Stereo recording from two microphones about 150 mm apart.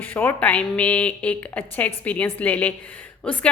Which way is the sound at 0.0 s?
10° left (ahead or behind).